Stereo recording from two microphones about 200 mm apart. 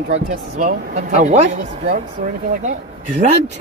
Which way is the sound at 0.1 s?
40° right (ahead or behind).